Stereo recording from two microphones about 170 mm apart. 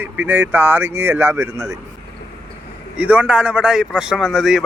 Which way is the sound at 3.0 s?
10° right (ahead or behind).